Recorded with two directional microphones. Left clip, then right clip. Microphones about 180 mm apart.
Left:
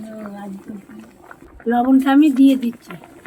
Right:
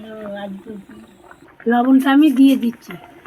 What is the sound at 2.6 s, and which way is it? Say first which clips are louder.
Speech: right 2 dB; 40° left (ahead or behind).